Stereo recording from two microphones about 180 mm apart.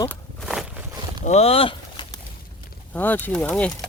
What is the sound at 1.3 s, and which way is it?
Speech, 35° left (ahead or behind).